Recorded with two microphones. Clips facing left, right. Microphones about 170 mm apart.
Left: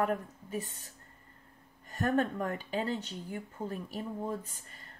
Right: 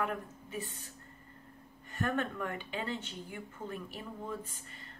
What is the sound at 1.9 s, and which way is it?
Speech, 40° left (ahead or behind).